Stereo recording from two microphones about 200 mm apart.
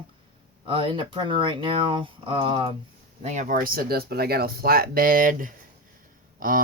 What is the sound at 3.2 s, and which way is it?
Speech, 35° right (ahead or behind).